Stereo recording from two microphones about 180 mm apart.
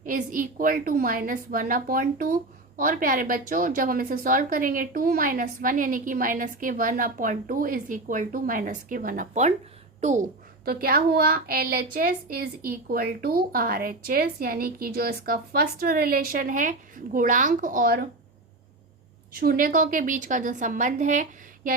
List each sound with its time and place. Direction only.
0.0 s a woman's voice: 50° right (ahead or behind)
10.7 s a woman's voice: 55° right (ahead or behind)
19.4 s a woman's voice: 55° right (ahead or behind)